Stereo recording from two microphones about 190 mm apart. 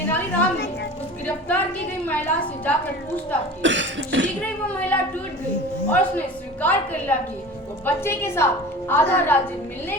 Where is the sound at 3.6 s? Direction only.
75° right (ahead or behind).